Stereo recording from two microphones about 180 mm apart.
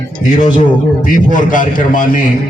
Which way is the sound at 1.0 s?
45° left (ahead or behind).